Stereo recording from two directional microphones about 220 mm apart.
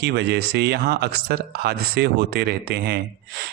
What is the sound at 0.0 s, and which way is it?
Speech, 50° right (ahead or behind).